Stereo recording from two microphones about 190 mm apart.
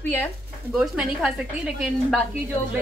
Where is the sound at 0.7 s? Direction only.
Centre (ahead or behind).